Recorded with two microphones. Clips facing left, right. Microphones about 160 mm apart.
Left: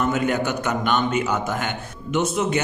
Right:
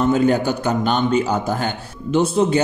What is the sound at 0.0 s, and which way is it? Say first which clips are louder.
A man's voice: right 5 dB; 30° right (ahead or behind).